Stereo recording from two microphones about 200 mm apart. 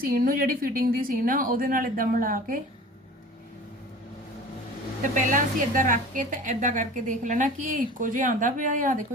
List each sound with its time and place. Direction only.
0.0 s speech: 45° right (ahead or behind)
5.3 s a woman's voice: 40° right (ahead or behind)